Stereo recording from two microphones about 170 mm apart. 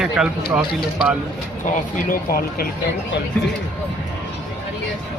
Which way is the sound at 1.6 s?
60° left (ahead or behind).